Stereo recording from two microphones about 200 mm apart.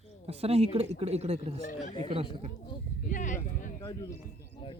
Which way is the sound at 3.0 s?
40° left (ahead or behind).